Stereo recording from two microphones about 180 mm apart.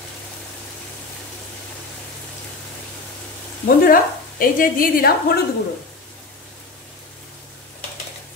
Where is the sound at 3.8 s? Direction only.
50° left (ahead or behind).